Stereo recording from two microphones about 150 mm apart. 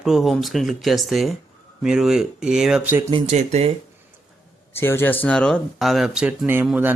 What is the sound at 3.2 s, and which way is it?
Speech, 50° right (ahead or behind).